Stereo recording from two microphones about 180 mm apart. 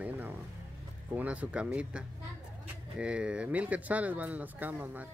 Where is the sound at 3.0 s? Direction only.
5° right (ahead or behind).